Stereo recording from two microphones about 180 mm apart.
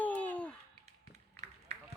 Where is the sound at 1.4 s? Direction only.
40° right (ahead or behind).